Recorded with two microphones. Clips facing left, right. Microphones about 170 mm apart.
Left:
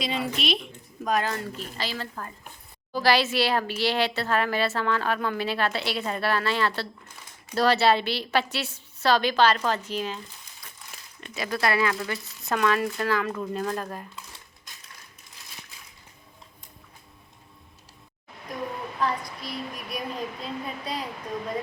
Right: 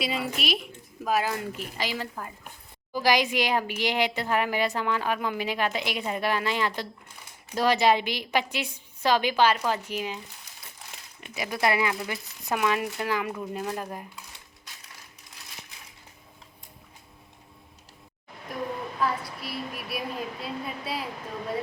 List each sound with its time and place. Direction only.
0.0 s speech: 5° right (ahead or behind)
11.2 s speech: 15° right (ahead or behind)
18.9 s speech: 5° right (ahead or behind)